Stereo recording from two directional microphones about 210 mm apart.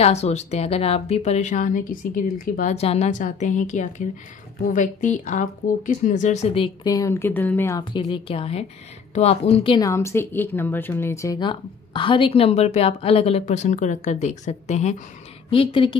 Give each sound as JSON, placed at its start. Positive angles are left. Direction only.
{"t": 0.0, "sound": "a woman's voice", "side_deg": 30}
{"t": 7.8, "sound": "speech", "side_deg": 25}